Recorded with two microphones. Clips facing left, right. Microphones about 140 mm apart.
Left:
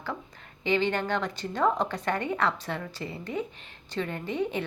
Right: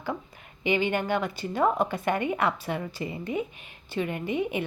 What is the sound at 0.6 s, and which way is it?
A woman's voice, 10° right (ahead or behind).